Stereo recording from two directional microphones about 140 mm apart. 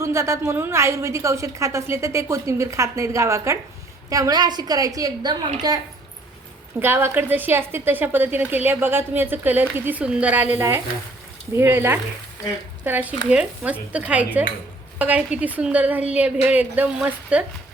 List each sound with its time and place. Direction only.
0.0 s a woman's voice: 20° right (ahead or behind)
6.7 s a woman's voice: 15° right (ahead or behind)